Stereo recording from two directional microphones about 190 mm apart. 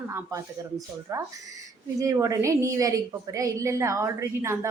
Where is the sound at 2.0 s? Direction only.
15° right (ahead or behind).